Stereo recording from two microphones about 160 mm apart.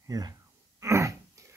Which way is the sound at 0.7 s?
20° right (ahead or behind).